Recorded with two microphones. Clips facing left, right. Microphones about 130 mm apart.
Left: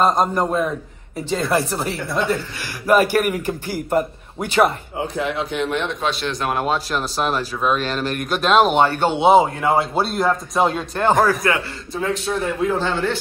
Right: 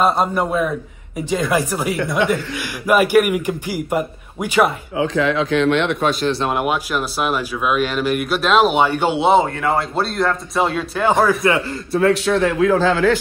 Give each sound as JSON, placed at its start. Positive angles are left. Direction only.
{"t": 0.2, "sound": "speech", "side_deg": -5}
{"t": 4.9, "sound": "a man's voice", "side_deg": -90}
{"t": 6.2, "sound": "speech", "side_deg": -35}
{"t": 6.5, "sound": "speech", "side_deg": -15}
{"t": 9.2, "sound": "speech", "side_deg": 0}
{"t": 11.4, "sound": "a man's voice", "side_deg": -25}
{"t": 11.9, "sound": "a man's voice", "side_deg": -70}